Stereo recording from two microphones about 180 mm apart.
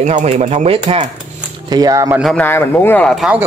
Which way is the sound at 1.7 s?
20° right (ahead or behind).